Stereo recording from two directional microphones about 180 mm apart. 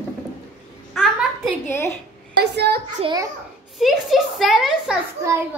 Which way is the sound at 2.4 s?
65° right (ahead or behind).